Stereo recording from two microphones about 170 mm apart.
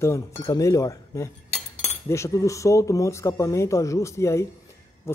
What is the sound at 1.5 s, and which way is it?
Cutlery, 40° left (ahead or behind).